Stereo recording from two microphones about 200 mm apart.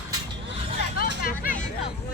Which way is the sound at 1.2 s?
45° left (ahead or behind).